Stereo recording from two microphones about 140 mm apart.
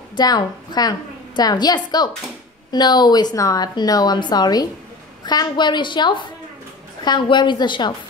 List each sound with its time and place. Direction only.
0.1 s a woman's voice: 30° left (ahead or behind)